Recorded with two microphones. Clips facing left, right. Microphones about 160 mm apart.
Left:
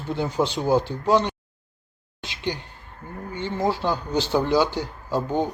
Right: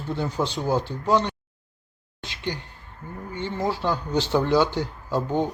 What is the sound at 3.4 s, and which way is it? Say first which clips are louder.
Speech: left 2 dB; 25° left (ahead or behind).